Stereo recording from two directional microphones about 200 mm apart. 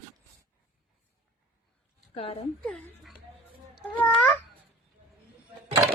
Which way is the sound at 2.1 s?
30° left (ahead or behind).